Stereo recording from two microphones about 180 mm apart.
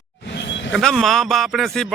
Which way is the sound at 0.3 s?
85° left.